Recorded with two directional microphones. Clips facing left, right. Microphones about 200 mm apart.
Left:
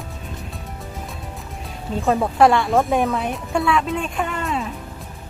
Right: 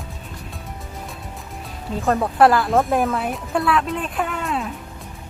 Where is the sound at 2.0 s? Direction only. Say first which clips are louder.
Even; centre (ahead or behind).